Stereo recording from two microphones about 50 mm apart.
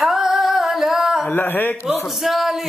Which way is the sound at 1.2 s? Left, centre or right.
Left.